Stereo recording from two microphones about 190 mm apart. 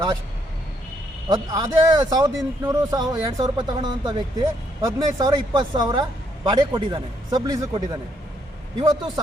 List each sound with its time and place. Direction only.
1.3 s speech: 20° right (ahead or behind)